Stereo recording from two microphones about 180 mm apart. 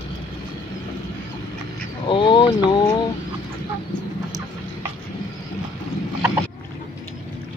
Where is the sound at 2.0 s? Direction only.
25° left (ahead or behind).